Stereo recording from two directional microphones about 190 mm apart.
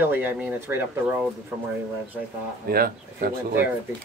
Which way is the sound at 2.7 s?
50° right (ahead or behind).